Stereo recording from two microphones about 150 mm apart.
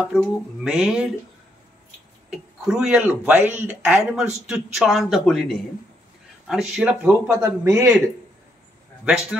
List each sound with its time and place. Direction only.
0.1 s speech: 5° right (ahead or behind)
2.3 s speech: 5° right (ahead or behind)
7.2 s a man's voice: 20° right (ahead or behind)